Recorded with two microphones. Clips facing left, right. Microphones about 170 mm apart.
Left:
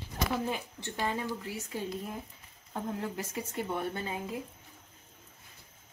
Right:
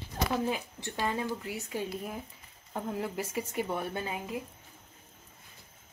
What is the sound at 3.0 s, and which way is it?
Speech, 10° right (ahead or behind).